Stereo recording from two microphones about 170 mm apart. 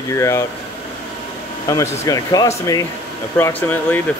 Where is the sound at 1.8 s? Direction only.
20° left (ahead or behind).